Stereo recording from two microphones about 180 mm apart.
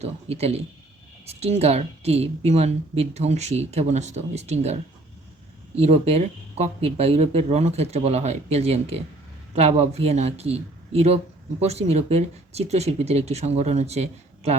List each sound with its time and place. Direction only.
0.0 s a woman's voice: 35° right (ahead or behind)